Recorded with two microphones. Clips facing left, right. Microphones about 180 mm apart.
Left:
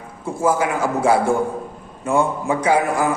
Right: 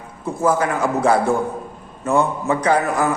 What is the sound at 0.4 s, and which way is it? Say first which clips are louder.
A man's voice: even; 10° left (ahead or behind).